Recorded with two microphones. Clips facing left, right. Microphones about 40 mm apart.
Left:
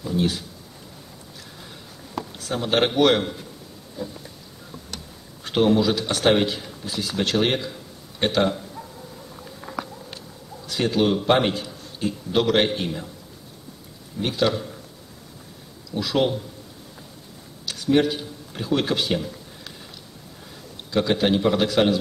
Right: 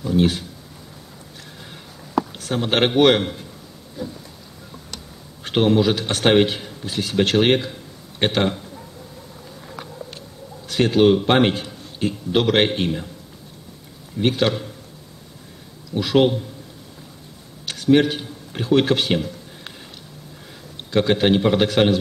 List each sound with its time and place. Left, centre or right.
0.0 s a man's voice: right
2.5 s a man's voice: right
5.4 s a sound: right
5.8 s a man's voice: right
10.7 s a man's voice: right
14.2 s a man's voice: right
15.9 s a man's voice: right
17.6 s speech: right
20.9 s a man's voice: right